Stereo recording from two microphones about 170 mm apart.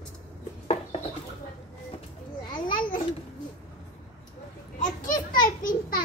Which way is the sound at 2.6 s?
55° left (ahead or behind).